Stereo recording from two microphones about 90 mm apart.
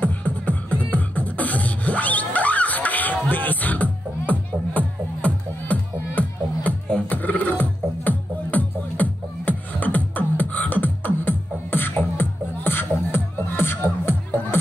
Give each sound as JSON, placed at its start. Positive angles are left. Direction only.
{"t": 0.0, "sound": "beatboxing", "side_deg": 15}